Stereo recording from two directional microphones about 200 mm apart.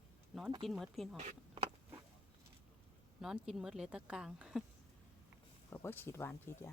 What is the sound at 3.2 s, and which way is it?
Speech, centre (ahead or behind).